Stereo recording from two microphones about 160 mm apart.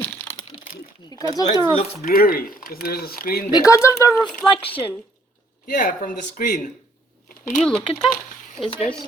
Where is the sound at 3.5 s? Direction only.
20° left (ahead or behind).